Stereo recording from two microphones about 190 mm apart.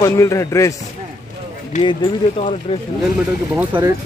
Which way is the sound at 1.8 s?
25° left (ahead or behind).